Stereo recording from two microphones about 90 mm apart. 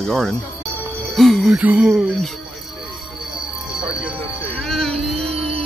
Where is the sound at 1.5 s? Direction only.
15° right (ahead or behind).